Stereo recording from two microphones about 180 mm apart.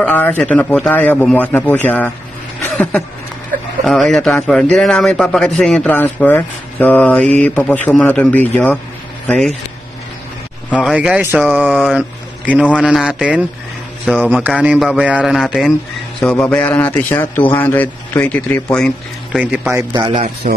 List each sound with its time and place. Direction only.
0.0 s a man's voice: 10° left (ahead or behind)
10.8 s a man's voice: 5° right (ahead or behind)
19.4 s speech: 5° right (ahead or behind)
19.8 s a man's voice: 20° right (ahead or behind)
20.4 s speech: 45° right (ahead or behind)